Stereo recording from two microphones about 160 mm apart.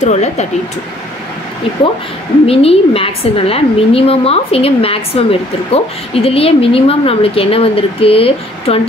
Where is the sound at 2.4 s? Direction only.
35° left (ahead or behind).